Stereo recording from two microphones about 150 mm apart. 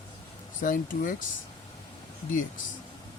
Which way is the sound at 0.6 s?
65° left (ahead or behind).